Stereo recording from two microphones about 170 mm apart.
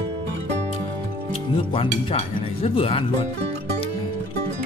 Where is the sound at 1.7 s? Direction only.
30° left (ahead or behind).